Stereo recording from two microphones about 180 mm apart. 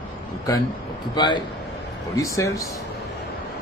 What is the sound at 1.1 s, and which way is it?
A man's voice, 25° left (ahead or behind).